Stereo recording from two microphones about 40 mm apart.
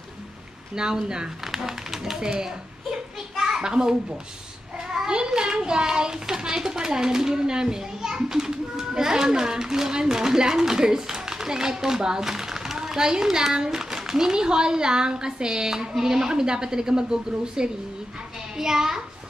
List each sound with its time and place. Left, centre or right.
0.7 s a child's voice: centre